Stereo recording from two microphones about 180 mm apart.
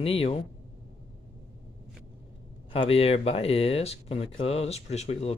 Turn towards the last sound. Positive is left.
turn(degrees=35)  # may be behind; listen again after turning